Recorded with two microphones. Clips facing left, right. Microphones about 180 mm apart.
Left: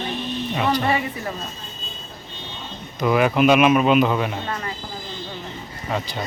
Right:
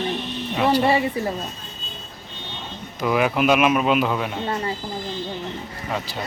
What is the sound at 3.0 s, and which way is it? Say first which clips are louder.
Speech: left 3 dB; centre (ahead or behind).